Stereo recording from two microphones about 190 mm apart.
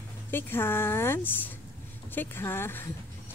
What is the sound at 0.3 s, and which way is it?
A woman's voice, 10° left (ahead or behind).